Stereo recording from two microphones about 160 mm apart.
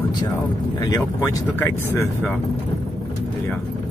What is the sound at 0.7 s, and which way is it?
Speech, 20° left (ahead or behind).